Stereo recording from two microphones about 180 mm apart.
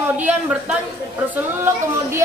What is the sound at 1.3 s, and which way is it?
Speech, 10° right (ahead or behind).